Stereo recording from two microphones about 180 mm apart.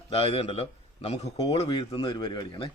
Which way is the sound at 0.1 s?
35° left (ahead or behind).